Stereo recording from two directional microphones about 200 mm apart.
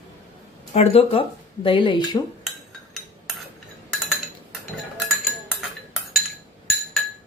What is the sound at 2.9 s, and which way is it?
Cutlery, centre (ahead or behind).